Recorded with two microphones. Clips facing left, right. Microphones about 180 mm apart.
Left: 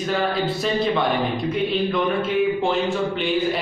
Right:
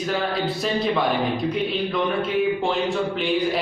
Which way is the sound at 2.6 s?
Centre (ahead or behind).